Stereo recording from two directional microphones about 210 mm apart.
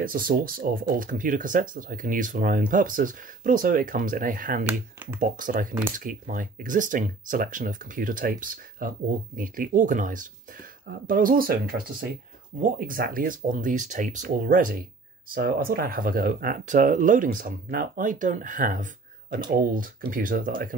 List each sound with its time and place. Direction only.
0.0 s speech: 40° right (ahead or behind)
4.6 s speech: 10° right (ahead or behind)
5.2 s speech: 40° right (ahead or behind)